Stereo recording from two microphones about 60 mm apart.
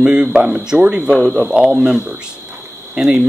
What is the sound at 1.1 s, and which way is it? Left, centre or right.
Speech, centre.